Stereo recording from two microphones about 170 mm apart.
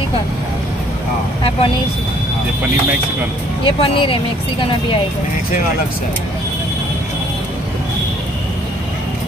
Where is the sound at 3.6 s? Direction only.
30° left (ahead or behind).